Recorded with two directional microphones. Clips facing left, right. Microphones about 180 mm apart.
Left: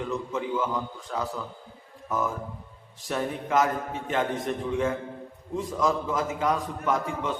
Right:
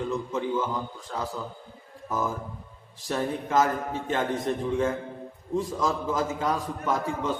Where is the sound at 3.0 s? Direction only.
30° right (ahead or behind).